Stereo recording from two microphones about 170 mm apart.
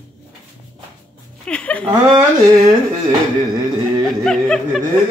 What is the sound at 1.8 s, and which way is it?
Speech, 25° right (ahead or behind).